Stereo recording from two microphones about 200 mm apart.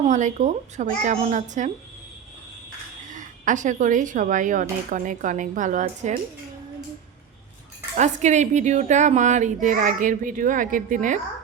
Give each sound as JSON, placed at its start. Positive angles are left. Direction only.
{"t": 0.0, "sound": "a woman's voice", "side_deg": -35}
{"t": 3.1, "sound": "a woman's voice", "side_deg": -40}
{"t": 7.9, "sound": "a woman's voice", "side_deg": -35}